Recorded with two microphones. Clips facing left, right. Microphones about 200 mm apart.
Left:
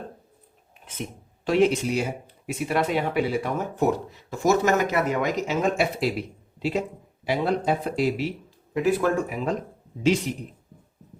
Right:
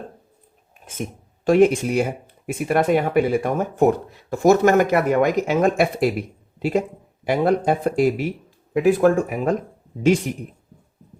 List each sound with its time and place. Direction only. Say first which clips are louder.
1.5 s speech: right 5 dB; 50° right (ahead or behind)